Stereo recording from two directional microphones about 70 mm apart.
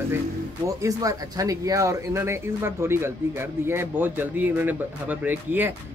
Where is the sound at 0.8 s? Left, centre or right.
Right.